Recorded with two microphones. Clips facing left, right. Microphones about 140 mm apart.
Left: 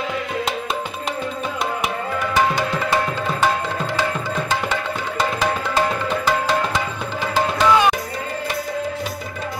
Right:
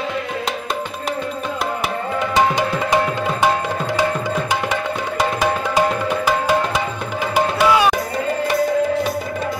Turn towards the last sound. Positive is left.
turn(degrees=-10)  # may be behind; listen again after turning